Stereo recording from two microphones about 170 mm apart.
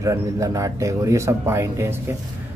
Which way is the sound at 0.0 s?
20° right (ahead or behind).